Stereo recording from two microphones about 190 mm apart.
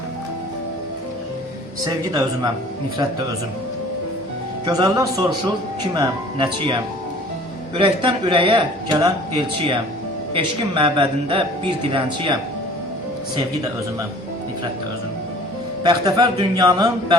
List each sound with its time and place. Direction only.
1.8 s a man's voice: 20° right (ahead or behind)
4.6 s a man's voice: 20° right (ahead or behind)
7.8 s a man's voice: 25° right (ahead or behind)
10.3 s a man's voice: 25° right (ahead or behind)
15.8 s a man's voice: 20° right (ahead or behind)